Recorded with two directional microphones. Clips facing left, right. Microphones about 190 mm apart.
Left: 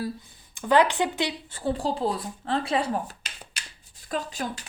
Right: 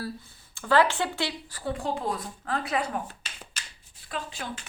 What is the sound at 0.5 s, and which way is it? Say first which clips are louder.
Speech: left 2 dB; 20° left (ahead or behind).